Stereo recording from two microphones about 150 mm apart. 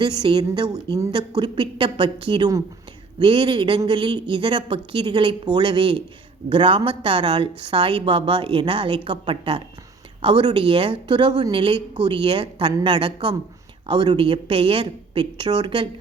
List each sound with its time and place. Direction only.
0.2 s a woman's voice: 30° right (ahead or behind)